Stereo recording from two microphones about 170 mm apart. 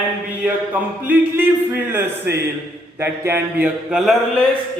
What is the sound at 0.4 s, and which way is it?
Speech, 10° right (ahead or behind).